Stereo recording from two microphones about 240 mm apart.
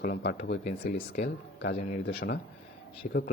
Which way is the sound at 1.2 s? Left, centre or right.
Left.